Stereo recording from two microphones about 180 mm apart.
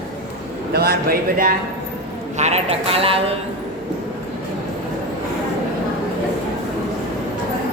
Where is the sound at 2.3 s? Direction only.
40° right (ahead or behind).